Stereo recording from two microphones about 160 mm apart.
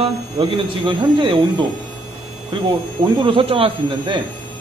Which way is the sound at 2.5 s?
30° right (ahead or behind).